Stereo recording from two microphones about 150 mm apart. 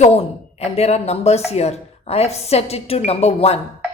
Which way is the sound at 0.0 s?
45° left (ahead or behind).